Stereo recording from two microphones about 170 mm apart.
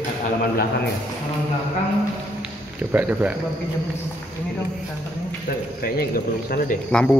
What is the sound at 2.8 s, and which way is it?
Speech, 10° right (ahead or behind).